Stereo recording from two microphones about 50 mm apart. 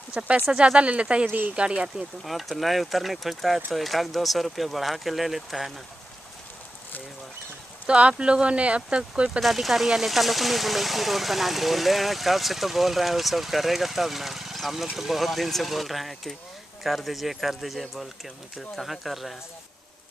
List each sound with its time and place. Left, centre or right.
0.5 s speech: centre
0.7 s speech: right
2.2 s speech: centre
7.8 s speech: right
9.4 s speech: centre